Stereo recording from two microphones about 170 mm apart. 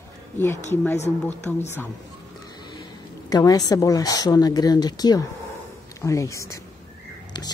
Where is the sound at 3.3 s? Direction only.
20° left (ahead or behind).